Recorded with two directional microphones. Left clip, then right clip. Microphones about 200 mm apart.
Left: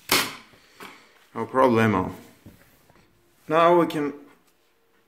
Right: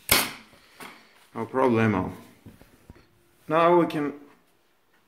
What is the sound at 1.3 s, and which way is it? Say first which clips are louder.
Speech: left 4 dB; 10° left (ahead or behind).